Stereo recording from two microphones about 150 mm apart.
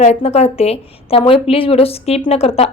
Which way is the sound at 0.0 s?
45° left (ahead or behind).